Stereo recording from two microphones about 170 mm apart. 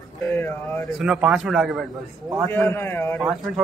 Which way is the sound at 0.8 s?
5° right (ahead or behind).